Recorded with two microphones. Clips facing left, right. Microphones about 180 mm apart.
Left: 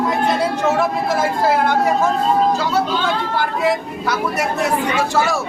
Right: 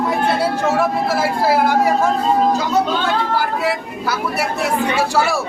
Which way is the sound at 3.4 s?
5° right (ahead or behind).